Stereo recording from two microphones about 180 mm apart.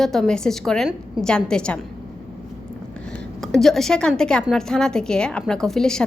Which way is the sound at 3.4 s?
Centre (ahead or behind).